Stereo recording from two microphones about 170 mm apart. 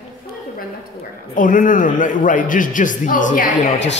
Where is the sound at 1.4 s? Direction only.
50° left (ahead or behind).